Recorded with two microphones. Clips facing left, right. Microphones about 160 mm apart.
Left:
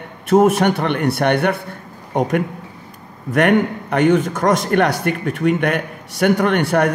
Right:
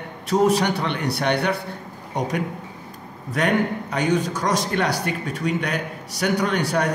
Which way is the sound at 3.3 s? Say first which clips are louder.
Left 6 dB; 60° left (ahead or behind).